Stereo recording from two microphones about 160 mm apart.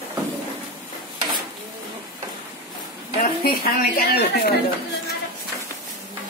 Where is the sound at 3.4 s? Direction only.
70° left (ahead or behind).